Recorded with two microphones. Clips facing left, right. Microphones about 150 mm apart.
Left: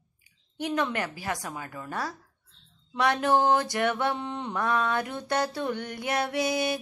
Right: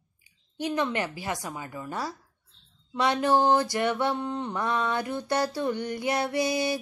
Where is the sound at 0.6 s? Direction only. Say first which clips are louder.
Right 1 dB; centre (ahead or behind).